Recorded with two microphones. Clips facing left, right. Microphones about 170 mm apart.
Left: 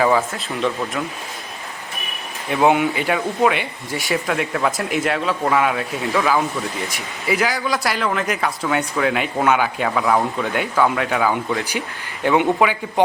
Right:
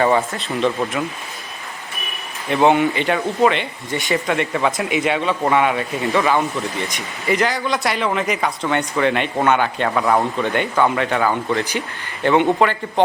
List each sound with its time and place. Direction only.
0.3 s speech: centre (ahead or behind)
2.5 s speech: 5° left (ahead or behind)